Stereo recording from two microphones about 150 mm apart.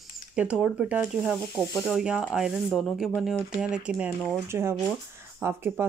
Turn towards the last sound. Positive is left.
turn(degrees=-15)  # may be behind; listen again after turning